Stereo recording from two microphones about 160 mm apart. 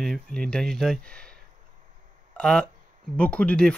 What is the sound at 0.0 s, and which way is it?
Speech, 5° left (ahead or behind).